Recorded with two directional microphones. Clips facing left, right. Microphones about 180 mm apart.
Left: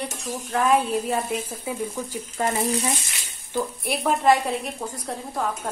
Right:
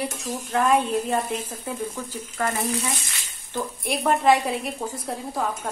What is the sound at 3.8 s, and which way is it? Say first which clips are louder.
Speech: right 4 dB; centre (ahead or behind).